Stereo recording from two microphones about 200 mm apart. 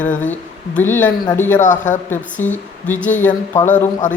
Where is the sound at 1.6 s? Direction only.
40° left (ahead or behind).